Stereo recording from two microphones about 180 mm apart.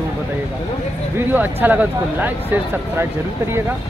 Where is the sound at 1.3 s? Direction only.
10° right (ahead or behind).